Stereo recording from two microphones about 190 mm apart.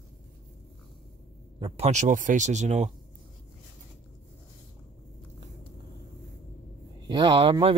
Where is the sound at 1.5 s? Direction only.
30° right (ahead or behind).